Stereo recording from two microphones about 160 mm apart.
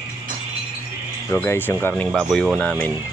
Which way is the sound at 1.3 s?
15° left (ahead or behind).